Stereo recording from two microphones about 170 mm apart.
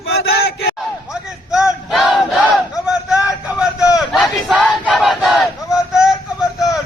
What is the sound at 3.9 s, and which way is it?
Crowd, centre (ahead or behind).